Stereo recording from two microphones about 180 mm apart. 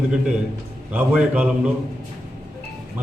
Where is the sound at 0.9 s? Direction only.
5° right (ahead or behind).